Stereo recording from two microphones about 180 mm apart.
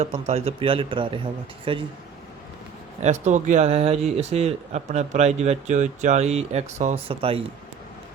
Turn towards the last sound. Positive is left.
turn(degrees=-30)  # may be behind; listen again after turning